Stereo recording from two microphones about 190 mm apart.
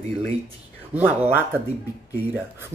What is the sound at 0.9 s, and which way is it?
Speech, 10° right (ahead or behind).